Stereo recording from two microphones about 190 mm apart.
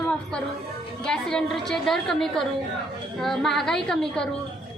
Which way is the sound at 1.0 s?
5° left (ahead or behind).